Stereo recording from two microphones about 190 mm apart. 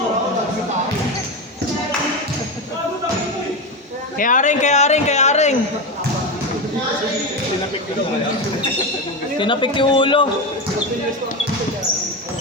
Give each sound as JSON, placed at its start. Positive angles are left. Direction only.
{"t": 4.2, "sound": "speech", "side_deg": 45}
{"t": 9.4, "sound": "a man's voice", "side_deg": 25}